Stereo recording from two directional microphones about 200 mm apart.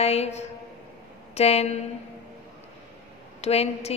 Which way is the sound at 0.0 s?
30° left (ahead or behind).